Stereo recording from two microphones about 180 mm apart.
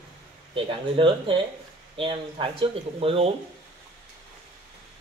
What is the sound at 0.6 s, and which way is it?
A man's voice, 30° right (ahead or behind).